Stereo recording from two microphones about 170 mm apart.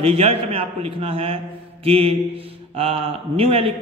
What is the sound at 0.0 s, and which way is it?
A man's voice, 35° right (ahead or behind).